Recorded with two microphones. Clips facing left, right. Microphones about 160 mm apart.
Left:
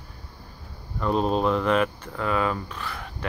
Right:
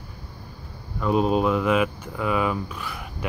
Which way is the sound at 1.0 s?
5° right (ahead or behind).